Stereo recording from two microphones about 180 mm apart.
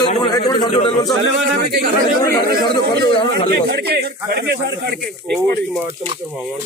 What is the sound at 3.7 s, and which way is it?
Speech, 60° right (ahead or behind).